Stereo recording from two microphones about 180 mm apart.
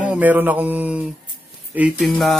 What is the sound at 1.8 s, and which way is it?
Speech, 5° right (ahead or behind).